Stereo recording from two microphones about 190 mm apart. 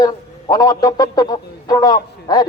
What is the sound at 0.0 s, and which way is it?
Speech, 20° left (ahead or behind).